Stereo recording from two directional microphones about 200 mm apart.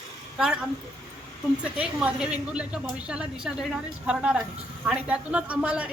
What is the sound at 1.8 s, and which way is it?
A woman's voice, 5° right (ahead or behind).